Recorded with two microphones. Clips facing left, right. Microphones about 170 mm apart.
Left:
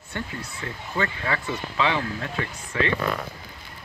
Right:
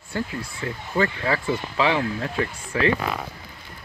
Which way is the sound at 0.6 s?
25° right (ahead or behind).